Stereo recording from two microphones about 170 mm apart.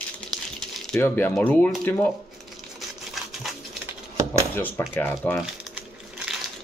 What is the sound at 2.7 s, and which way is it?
Crumpling, centre (ahead or behind).